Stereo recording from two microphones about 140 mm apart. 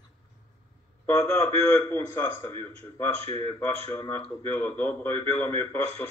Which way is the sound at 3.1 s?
45° right (ahead or behind).